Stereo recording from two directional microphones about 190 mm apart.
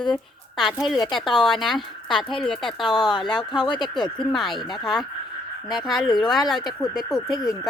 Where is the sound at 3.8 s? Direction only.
Centre (ahead or behind).